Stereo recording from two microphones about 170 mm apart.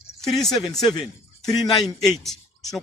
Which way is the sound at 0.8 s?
30° left (ahead or behind).